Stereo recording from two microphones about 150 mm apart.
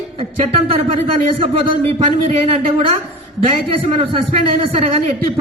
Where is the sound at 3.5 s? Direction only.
40° right (ahead or behind).